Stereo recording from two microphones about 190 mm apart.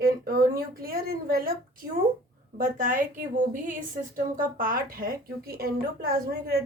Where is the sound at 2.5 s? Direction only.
45° right (ahead or behind).